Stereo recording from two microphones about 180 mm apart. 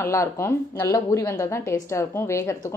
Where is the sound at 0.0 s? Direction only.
15° left (ahead or behind).